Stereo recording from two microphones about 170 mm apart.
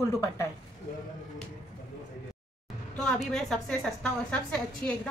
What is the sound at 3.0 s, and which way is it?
A woman's voice, 5° left (ahead or behind).